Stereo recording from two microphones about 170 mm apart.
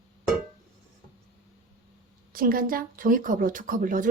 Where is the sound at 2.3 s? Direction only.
55° right (ahead or behind).